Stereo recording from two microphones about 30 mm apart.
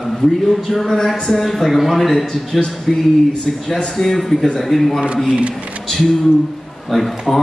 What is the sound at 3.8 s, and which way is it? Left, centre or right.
Speech, centre.